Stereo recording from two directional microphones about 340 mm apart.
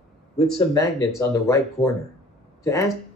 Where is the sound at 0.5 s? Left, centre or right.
Centre.